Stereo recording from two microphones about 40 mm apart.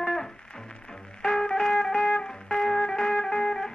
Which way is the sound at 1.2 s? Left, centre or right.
Centre.